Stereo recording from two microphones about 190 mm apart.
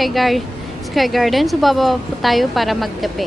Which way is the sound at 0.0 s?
Centre (ahead or behind).